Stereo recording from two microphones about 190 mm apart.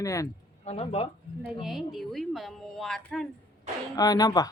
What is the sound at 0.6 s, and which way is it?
Speech, 35° left (ahead or behind).